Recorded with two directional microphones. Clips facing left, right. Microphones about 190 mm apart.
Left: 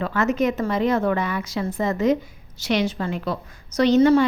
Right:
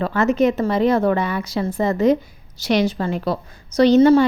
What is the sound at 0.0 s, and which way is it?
A woman's voice, 30° right (ahead or behind).